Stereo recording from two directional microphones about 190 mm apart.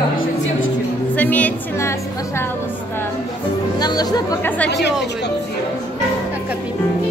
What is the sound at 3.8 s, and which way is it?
Speech, 20° left (ahead or behind).